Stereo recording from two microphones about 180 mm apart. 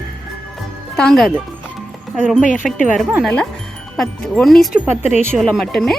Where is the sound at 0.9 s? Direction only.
5° left (ahead or behind).